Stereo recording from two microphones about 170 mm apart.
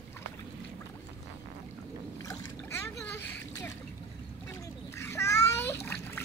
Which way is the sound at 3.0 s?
10° left (ahead or behind).